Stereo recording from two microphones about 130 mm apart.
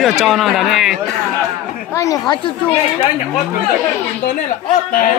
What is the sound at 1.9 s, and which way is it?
Speech, 25° left (ahead or behind).